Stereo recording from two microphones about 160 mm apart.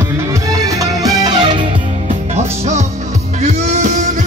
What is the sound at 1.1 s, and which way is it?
Music, 25° right (ahead or behind).